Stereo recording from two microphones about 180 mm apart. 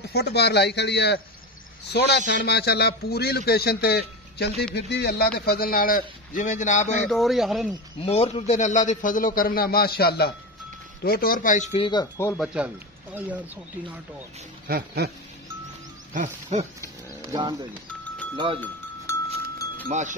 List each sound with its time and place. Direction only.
0.1 s a man's voice: 65° left (ahead or behind); by 7.1 s 40° left (ahead or behind)
7.1 s speech: centre (ahead or behind)
8.0 s a man's voice: 35° left (ahead or behind)
11.9 s speech: 20° left (ahead or behind)
12.4 s speech: 5° right (ahead or behind)
14.7 s dog: 55° right (ahead or behind)
16.1 s music: 45° right (ahead or behind)
17.3 s speech: 20° right (ahead or behind)
19.9 s music: 45° right (ahead or behind)